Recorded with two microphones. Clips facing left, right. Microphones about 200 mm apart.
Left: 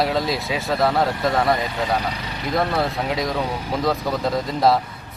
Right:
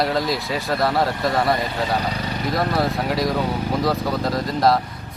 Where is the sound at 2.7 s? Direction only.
Centre (ahead or behind).